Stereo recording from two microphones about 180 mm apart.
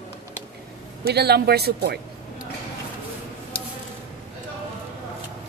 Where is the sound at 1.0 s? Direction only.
65° right (ahead or behind).